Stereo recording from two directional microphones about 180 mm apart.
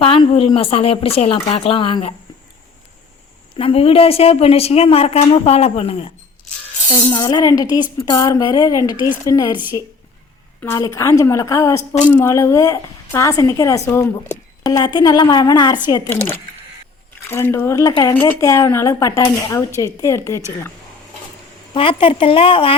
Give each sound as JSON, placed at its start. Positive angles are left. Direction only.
{"t": 0.0, "sound": "speech", "side_deg": 30}
{"t": 3.6, "sound": "a woman's voice", "side_deg": 30}
{"t": 10.6, "sound": "a woman's voice", "side_deg": 15}
{"t": 17.2, "sound": "a woman's voice", "side_deg": 15}
{"t": 21.7, "sound": "a woman's voice", "side_deg": 30}